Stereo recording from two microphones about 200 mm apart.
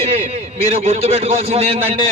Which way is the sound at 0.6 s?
30° right (ahead or behind).